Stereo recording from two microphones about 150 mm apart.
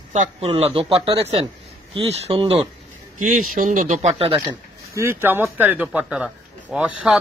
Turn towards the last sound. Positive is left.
turn(degrees=-5)  # may be behind; listen again after turning